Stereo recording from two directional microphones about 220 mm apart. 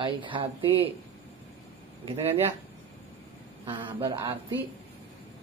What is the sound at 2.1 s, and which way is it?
Speech, 25° right (ahead or behind).